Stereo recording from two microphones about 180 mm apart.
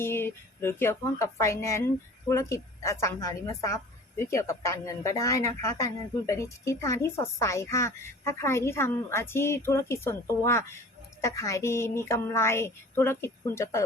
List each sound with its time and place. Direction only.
0.0 s a woman's voice: 15° left (ahead or behind)